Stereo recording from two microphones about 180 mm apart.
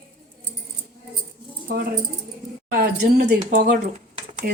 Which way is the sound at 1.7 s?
55° right (ahead or behind).